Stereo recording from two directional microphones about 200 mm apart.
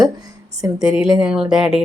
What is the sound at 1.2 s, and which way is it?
Speech, 5° right (ahead or behind).